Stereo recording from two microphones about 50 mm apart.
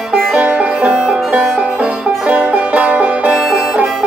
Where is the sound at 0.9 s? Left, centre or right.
Centre.